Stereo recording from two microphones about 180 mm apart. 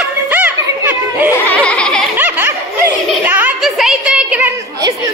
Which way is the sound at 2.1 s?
10° right (ahead or behind).